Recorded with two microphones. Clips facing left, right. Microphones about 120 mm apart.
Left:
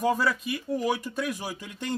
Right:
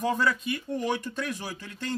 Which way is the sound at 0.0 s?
10° left (ahead or behind).